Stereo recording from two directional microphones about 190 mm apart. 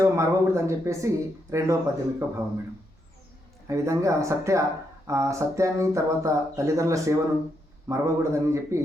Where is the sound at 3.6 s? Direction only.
15° right (ahead or behind).